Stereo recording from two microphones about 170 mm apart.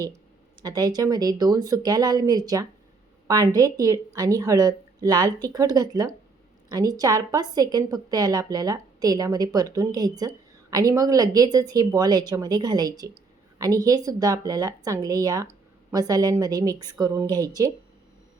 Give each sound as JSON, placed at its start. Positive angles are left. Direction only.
{"t": 0.6, "sound": "a woman's voice", "side_deg": -20}